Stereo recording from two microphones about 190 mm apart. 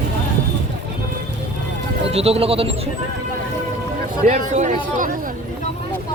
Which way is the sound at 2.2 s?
30° right (ahead or behind).